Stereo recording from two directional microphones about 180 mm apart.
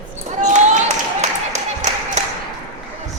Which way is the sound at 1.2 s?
40° right (ahead or behind).